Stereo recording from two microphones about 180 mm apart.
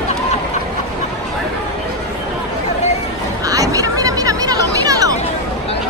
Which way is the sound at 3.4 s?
20° right (ahead or behind).